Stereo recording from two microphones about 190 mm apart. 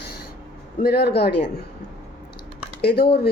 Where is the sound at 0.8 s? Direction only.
55° left (ahead or behind).